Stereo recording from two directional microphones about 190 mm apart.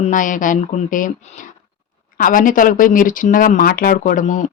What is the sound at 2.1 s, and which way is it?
Speech, 45° left (ahead or behind).